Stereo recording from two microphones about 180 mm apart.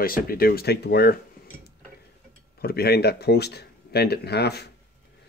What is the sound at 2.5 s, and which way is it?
Speech, 60° left (ahead or behind).